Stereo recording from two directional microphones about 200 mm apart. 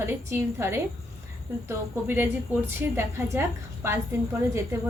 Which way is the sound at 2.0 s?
10° right (ahead or behind).